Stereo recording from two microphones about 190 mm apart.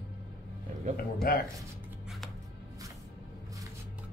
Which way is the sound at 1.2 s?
55° left (ahead or behind).